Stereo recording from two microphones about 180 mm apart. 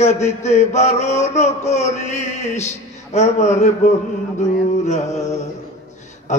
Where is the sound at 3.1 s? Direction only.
40° left (ahead or behind).